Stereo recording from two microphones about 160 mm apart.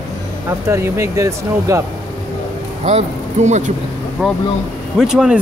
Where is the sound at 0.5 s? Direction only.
15° right (ahead or behind).